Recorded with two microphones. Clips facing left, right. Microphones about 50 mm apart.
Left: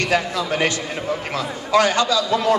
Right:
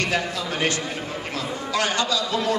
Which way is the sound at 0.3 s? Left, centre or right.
Left.